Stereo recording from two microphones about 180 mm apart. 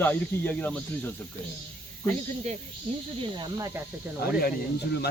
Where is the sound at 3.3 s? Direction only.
25° right (ahead or behind).